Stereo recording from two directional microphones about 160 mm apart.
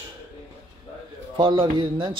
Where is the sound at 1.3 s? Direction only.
30° right (ahead or behind).